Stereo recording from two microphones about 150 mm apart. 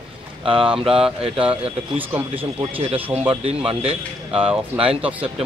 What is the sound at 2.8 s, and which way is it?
A man's voice, 40° right (ahead or behind).